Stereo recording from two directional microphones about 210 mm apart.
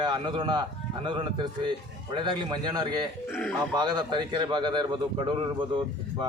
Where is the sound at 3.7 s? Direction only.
20° right (ahead or behind).